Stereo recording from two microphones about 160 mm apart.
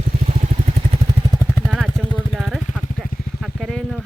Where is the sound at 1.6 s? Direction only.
Centre (ahead or behind).